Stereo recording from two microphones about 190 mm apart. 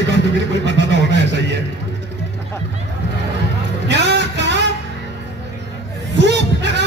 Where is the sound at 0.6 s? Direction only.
70° right (ahead or behind).